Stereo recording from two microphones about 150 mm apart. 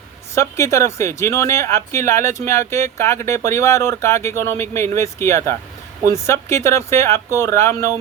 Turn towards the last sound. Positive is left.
turn(degrees=20)  # may be behind; listen again after turning